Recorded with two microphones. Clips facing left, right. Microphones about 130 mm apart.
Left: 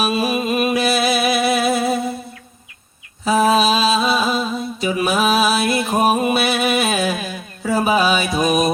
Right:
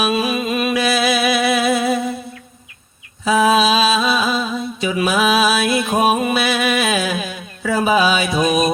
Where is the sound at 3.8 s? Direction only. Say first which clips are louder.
Even; 30° left (ahead or behind).